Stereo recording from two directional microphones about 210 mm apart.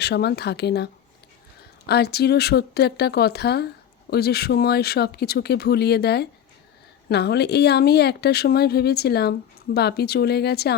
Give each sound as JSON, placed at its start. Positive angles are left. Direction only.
{"t": 0.0, "sound": "a woman's voice", "side_deg": 50}
{"t": 1.9, "sound": "a woman's voice", "side_deg": 50}